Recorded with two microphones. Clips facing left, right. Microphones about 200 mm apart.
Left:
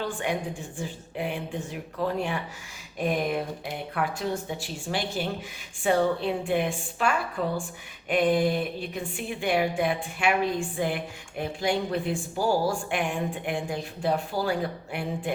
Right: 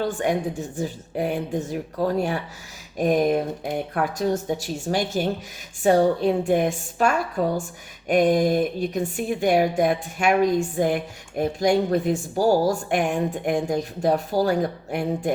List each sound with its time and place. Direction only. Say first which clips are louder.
0.0 s speech: right 6 dB; 40° right (ahead or behind)